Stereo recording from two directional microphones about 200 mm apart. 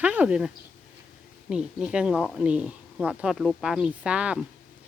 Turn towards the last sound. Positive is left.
turn(degrees=-5)  # may be behind; listen again after turning